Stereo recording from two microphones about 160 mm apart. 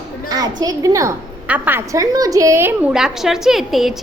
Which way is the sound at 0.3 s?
25° right (ahead or behind).